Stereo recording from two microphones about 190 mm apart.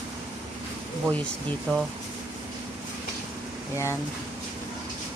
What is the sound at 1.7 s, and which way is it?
Speech, 5° left (ahead or behind).